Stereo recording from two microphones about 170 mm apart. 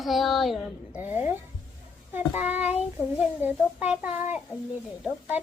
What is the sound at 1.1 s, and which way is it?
A child's voice, 10° right (ahead or behind).